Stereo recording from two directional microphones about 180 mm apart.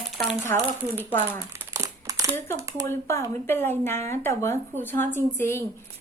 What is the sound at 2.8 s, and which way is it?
Speech, 15° left (ahead or behind).